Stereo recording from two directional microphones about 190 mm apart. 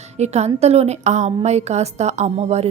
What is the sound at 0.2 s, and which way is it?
Speech, 35° right (ahead or behind).